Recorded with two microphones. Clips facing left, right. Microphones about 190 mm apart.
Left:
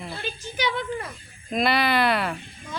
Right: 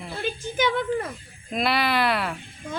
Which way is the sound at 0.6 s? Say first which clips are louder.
Right 4 dB; 50° right (ahead or behind).